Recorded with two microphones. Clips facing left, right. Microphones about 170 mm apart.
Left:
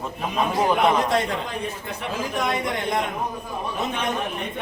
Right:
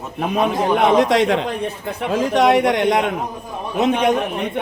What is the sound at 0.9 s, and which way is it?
Speech, 85° right.